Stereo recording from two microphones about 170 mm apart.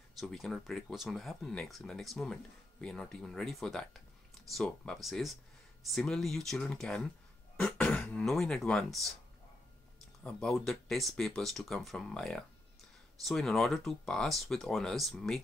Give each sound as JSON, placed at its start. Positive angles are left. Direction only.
{"t": 0.2, "sound": "speech", "side_deg": 0}
{"t": 10.2, "sound": "speech", "side_deg": 5}